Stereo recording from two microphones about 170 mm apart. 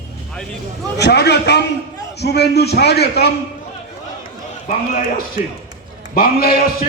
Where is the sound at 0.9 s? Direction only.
80° left.